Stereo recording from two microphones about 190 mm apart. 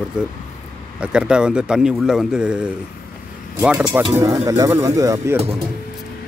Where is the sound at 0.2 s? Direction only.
5° right (ahead or behind).